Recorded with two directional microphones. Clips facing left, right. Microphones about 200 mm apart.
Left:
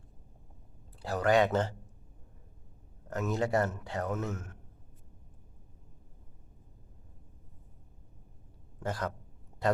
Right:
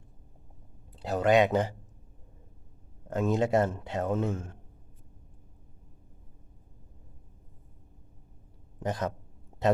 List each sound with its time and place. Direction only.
0.9 s speech: 20° right (ahead or behind)
3.1 s speech: 25° right (ahead or behind)
8.8 s speech: 20° right (ahead or behind)